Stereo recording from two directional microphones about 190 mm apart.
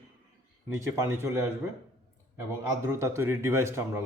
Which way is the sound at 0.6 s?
15° right (ahead or behind).